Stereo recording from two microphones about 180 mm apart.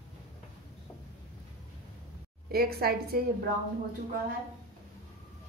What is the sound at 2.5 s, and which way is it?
Speech, 55° right (ahead or behind).